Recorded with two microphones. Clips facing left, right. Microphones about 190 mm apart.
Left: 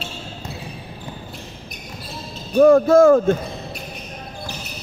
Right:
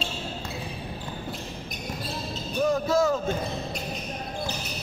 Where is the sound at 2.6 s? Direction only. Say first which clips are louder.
Left 12 dB; 55° left (ahead or behind).